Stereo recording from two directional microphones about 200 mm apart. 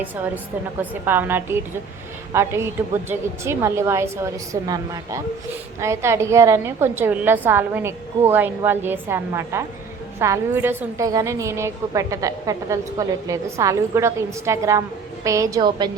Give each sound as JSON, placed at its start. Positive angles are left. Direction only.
{"t": 0.8, "sound": "a woman's voice", "side_deg": -10}